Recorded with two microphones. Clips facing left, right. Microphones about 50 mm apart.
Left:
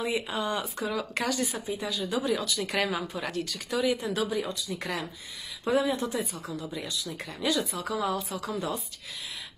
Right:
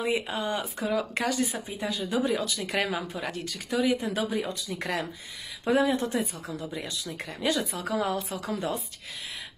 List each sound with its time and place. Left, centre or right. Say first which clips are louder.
0.0 s speech: right 1 dB; right
1.8 s a woman's voice: right 4 dB; right
3.7 s speech: right 1 dB; centre
4.6 s a woman's voice: right 2 dB; right